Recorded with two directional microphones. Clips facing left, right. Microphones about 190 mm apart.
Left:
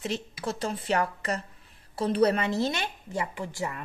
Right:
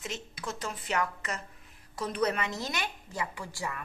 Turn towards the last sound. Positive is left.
turn(degrees=25)  # may be behind; listen again after turning